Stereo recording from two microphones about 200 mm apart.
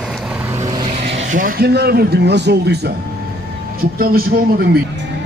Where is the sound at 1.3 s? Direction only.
50° right (ahead or behind).